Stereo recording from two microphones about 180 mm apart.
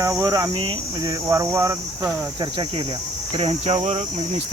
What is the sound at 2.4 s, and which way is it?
Speech, 25° right (ahead or behind).